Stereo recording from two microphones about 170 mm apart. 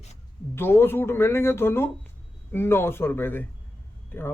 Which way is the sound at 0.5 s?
15° left (ahead or behind).